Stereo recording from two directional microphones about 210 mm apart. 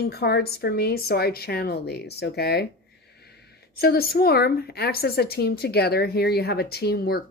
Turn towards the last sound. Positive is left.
turn(degrees=50)  # may be behind; listen again after turning